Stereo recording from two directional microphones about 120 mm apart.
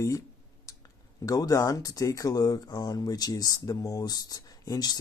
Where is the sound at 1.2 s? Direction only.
30° left (ahead or behind).